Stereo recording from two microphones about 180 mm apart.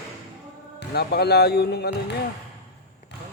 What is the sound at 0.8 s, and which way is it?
Speech, 65° left (ahead or behind).